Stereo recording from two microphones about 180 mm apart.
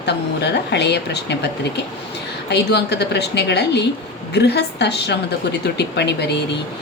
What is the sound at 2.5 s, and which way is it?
A woman's voice, 70° left (ahead or behind).